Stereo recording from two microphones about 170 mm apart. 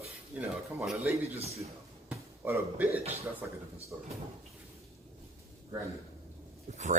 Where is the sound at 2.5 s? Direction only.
10° right (ahead or behind).